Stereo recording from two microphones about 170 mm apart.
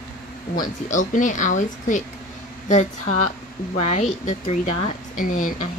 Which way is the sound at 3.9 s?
45° left (ahead or behind).